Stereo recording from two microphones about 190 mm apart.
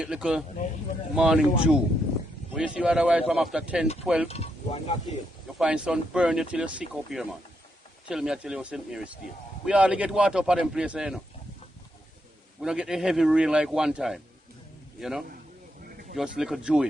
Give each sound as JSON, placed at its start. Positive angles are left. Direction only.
{"t": 0.0, "sound": "speech", "side_deg": -5}
{"t": 4.3, "sound": "speech", "side_deg": 30}
{"t": 5.5, "sound": "speech", "side_deg": -5}
{"t": 12.5, "sound": "speech", "side_deg": -5}
{"t": 16.1, "sound": "speech", "side_deg": 0}